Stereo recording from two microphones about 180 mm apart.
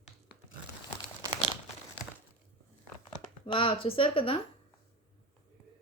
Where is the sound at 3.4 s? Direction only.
30° left (ahead or behind).